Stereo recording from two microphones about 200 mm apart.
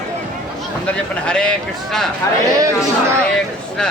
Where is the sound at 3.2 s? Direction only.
5° left (ahead or behind).